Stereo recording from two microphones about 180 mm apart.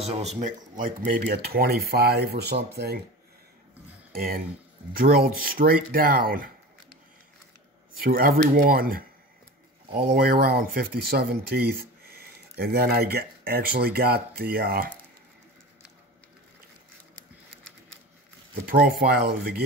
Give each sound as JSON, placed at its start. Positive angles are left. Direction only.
{"t": 0.0, "sound": "speech", "side_deg": -35}
{"t": 4.1, "sound": "speech", "side_deg": -55}
{"t": 8.0, "sound": "speech", "side_deg": -55}
{"t": 18.5, "sound": "speech", "side_deg": -55}